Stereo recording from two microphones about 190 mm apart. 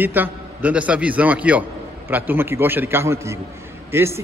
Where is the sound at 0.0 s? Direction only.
10° right (ahead or behind).